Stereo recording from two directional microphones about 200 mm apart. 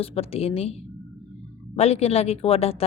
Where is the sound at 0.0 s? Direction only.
30° left (ahead or behind).